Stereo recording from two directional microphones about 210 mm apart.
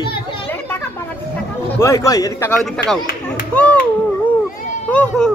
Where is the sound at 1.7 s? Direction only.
15° left (ahead or behind).